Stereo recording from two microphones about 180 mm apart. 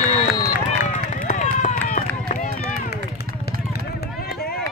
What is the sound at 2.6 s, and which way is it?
Run, 60° left (ahead or behind).